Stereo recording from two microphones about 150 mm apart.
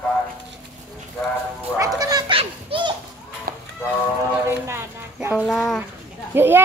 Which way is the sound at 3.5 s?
75° right (ahead or behind).